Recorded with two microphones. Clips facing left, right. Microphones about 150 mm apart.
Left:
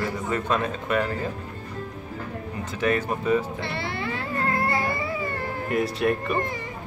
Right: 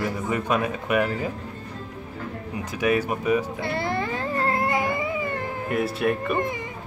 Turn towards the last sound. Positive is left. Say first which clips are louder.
# even
turn(degrees=-5)  # may be behind; listen again after turning